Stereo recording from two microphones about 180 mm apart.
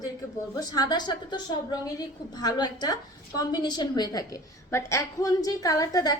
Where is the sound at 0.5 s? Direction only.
20° left (ahead or behind).